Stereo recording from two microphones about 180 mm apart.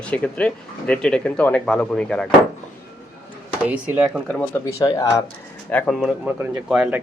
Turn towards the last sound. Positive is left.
turn(degrees=-5)  # may be behind; listen again after turning